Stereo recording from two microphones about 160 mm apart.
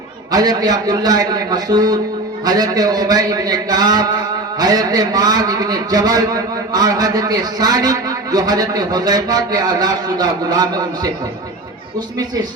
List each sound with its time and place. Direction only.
0.3 s a man's voice: 25° right (ahead or behind)